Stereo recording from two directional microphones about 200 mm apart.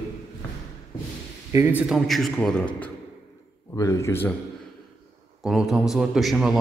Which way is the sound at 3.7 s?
15° left (ahead or behind).